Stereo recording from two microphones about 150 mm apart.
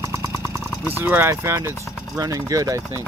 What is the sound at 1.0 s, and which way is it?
Speech, 15° right (ahead or behind).